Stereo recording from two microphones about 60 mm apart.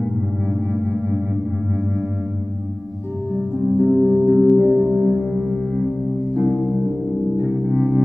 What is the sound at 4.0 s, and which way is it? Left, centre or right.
Music, centre.